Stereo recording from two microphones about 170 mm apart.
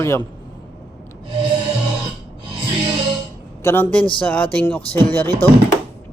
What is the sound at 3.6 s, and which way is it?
A man's voice, 10° left (ahead or behind).